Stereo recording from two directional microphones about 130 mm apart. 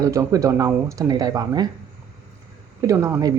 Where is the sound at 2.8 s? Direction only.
20° right (ahead or behind).